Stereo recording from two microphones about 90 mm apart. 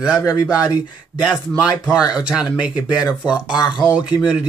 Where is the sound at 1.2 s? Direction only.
5° right (ahead or behind).